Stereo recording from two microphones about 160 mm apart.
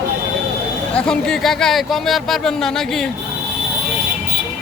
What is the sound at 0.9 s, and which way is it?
Speech, 5° left (ahead or behind).